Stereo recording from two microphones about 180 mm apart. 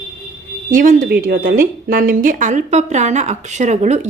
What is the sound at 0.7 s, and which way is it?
A woman's voice, 50° right (ahead or behind).